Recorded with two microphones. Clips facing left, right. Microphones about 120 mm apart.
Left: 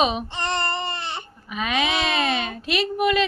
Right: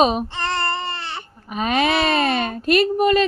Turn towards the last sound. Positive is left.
turn(degrees=-40)  # may be behind; listen again after turning